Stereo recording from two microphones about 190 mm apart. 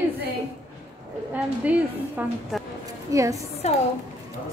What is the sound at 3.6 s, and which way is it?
Speech, 35° left (ahead or behind).